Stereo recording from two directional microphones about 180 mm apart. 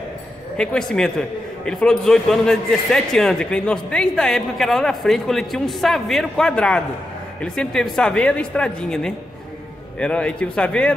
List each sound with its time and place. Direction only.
0.6 s a man's voice: 5° left (ahead or behind)